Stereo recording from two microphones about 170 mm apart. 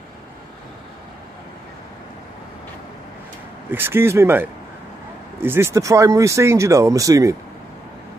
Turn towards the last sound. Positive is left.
turn(degrees=-20)  # may be behind; listen again after turning